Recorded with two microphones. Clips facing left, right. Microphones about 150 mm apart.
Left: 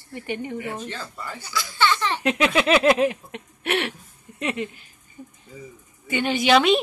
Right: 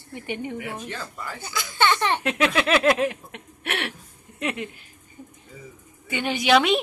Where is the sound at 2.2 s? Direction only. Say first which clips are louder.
Left 2 dB; 5° left (ahead or behind).